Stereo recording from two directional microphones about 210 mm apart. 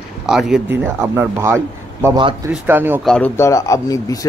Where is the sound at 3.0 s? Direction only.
5° left (ahead or behind).